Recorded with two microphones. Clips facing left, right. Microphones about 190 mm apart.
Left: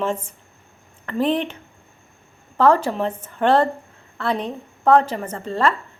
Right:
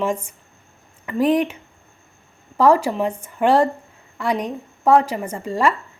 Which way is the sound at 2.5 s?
10° right (ahead or behind).